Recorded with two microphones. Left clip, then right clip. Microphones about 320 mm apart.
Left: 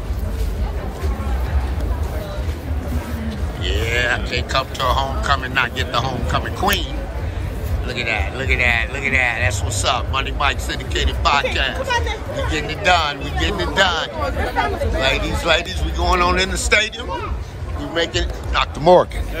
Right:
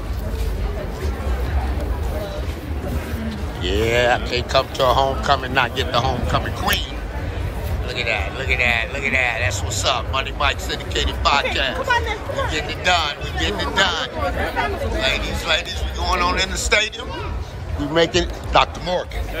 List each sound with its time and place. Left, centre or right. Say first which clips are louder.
3.6 s speech: right 2 dB; centre
7.9 s a man's voice: left 1 dB; centre
17.9 s speech: right 3 dB; centre